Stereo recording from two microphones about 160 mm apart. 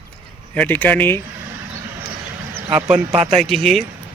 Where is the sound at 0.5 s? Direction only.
10° left (ahead or behind).